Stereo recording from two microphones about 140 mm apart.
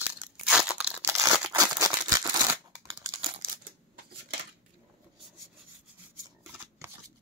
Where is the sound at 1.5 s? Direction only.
25° right (ahead or behind).